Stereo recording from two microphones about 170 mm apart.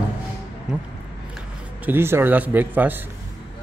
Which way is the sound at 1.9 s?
15° right (ahead or behind).